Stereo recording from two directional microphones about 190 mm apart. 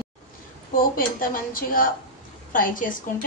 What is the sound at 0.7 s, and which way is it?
Speech, 50° left (ahead or behind).